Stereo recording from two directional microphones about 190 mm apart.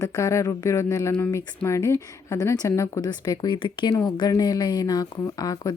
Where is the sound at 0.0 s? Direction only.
15° left (ahead or behind).